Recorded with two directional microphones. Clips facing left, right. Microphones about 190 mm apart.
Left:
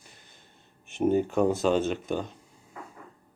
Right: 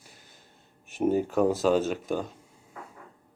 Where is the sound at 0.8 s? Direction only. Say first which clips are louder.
Left 1 dB; 5° right (ahead or behind).